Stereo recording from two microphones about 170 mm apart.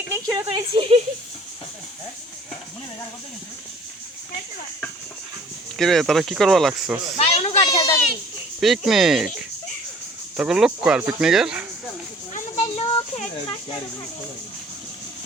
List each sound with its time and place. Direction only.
0.3 s speech: 30° right (ahead or behind)
5.7 s speech: centre (ahead or behind)
7.2 s speech: 40° left (ahead or behind)
7.6 s a sound: 25° left (ahead or behind)
8.6 s speech: centre (ahead or behind)
10.3 s speech: 5° right (ahead or behind)
12.3 s a sound: 40° left (ahead or behind)